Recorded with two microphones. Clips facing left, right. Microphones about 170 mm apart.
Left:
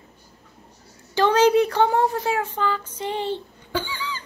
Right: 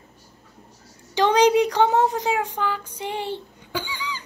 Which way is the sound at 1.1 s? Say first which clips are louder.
Even; 15° right (ahead or behind).